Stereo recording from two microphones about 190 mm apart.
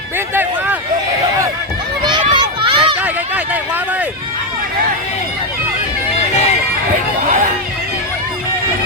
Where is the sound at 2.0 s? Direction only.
25° right (ahead or behind).